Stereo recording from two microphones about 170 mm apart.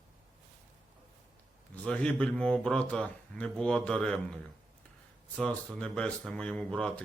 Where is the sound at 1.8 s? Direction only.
5° left (ahead or behind).